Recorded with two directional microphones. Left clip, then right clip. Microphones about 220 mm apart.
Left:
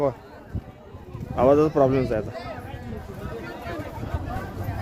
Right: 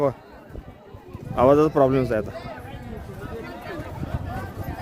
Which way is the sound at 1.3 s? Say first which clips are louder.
Right 1 dB; 20° right (ahead or behind).